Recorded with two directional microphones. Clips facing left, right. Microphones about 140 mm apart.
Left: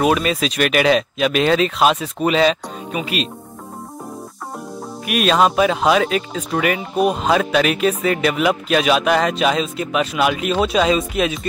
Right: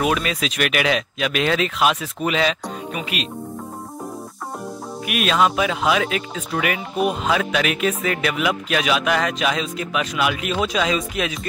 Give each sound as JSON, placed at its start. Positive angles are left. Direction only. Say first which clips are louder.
{"t": 0.0, "sound": "speech", "louder": "left 4 dB", "side_deg": 30}
{"t": 5.0, "sound": "speech", "louder": "left 3 dB", "side_deg": 40}